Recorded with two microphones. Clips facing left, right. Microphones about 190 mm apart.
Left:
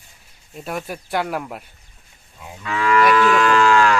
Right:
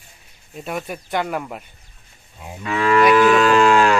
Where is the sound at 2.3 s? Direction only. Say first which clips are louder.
Right 2 dB; 25° right (ahead or behind).